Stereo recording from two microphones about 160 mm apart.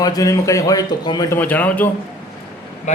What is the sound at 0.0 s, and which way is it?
A man's voice, 25° left (ahead or behind).